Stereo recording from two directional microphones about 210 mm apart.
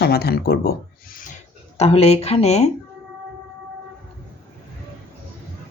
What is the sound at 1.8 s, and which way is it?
Speech, 30° left (ahead or behind).